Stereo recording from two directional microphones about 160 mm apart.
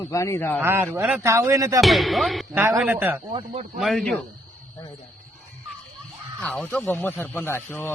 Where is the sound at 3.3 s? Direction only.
40° right (ahead or behind).